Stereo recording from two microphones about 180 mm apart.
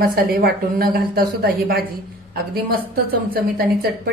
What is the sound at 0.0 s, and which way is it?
Speech, 55° right (ahead or behind).